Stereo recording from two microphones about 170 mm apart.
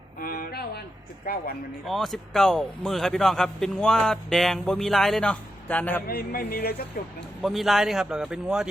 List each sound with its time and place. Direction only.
0.2 s a sound: 60° left (ahead or behind)
1.2 s speech: 60° left (ahead or behind)
1.9 s speech: centre (ahead or behind)
6.1 s speech: 60° left (ahead or behind)
7.4 s speech: centre (ahead or behind)